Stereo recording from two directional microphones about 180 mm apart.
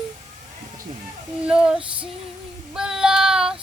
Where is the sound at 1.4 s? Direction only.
5° right (ahead or behind).